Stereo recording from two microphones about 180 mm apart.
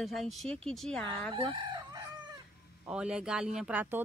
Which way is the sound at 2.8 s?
5° right (ahead or behind).